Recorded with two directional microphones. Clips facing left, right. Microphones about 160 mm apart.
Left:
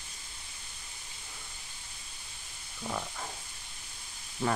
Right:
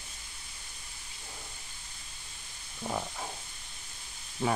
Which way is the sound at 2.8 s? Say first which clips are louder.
Right 2 dB; 15° right (ahead or behind).